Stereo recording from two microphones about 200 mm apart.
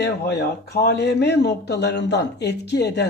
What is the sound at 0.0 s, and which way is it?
Speech, 55° left (ahead or behind).